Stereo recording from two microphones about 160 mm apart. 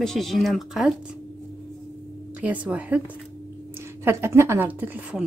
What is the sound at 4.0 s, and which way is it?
A woman's voice, 15° right (ahead or behind).